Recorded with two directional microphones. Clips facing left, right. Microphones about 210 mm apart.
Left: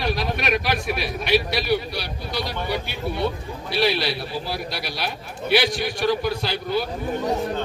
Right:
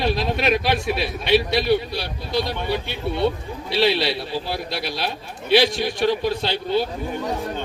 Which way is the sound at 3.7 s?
25° right (ahead or behind).